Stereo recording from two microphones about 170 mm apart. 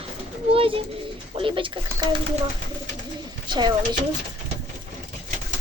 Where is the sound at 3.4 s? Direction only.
25° right (ahead or behind).